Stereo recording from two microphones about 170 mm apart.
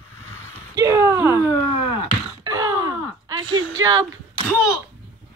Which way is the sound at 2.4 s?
20° right (ahead or behind).